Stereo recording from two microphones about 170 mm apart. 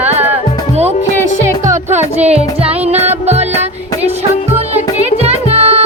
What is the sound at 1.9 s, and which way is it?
Music, 40° right (ahead or behind).